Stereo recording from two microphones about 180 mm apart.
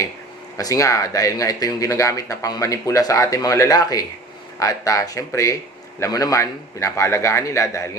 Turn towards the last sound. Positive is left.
turn(degrees=15)  # may be behind; listen again after turning